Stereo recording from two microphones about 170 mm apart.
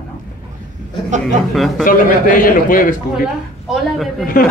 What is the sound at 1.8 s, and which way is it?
A man's voice, 55° left (ahead or behind).